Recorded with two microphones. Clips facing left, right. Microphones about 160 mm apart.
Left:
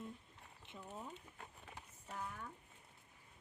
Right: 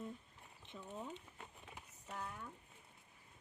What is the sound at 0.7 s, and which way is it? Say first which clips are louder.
Speech: right 2 dB; 5° left (ahead or behind).